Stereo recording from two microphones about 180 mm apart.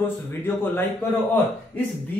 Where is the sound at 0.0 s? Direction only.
10° left (ahead or behind).